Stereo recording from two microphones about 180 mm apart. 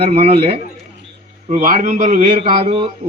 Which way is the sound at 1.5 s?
45° right (ahead or behind).